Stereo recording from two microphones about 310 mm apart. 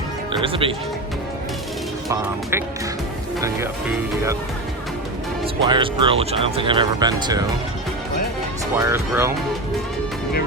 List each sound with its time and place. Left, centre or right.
0.3 s speech: centre
2.0 s speech: centre
5.6 s speech: centre
8.7 s speech: centre